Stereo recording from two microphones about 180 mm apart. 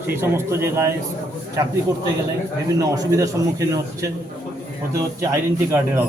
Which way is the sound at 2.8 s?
20° right (ahead or behind).